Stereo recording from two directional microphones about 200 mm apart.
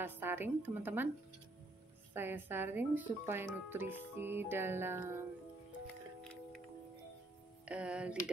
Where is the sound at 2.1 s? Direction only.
10° right (ahead or behind).